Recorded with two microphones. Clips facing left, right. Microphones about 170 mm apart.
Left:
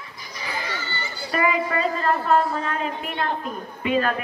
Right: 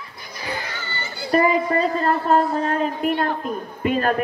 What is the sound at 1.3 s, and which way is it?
A woman's voice, 40° right (ahead or behind).